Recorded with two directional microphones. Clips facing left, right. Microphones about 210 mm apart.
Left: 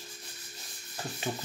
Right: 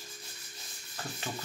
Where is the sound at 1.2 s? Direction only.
15° left (ahead or behind).